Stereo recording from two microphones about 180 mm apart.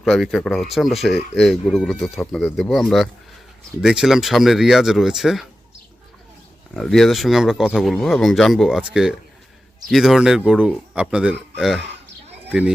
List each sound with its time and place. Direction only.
0.0 s speech: centre (ahead or behind)
6.7 s speech: centre (ahead or behind)